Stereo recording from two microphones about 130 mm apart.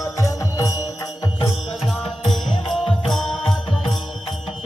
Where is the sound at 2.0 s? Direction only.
Centre (ahead or behind).